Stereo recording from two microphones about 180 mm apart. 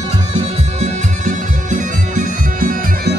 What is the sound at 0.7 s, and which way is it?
Music, 45° right (ahead or behind).